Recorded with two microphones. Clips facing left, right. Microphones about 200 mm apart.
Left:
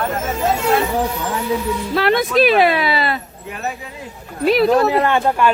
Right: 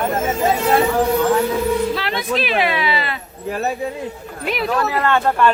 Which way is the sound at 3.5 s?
35° right (ahead or behind).